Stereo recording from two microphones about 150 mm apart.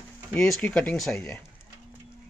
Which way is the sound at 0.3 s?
5° left (ahead or behind).